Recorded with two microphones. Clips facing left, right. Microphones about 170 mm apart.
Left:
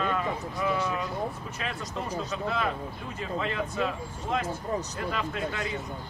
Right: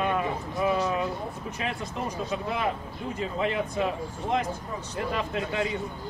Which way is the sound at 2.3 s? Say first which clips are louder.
Right 1 dB; 15° right (ahead or behind).